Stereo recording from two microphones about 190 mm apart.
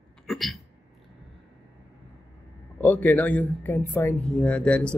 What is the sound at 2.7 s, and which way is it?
Speech, 10° left (ahead or behind).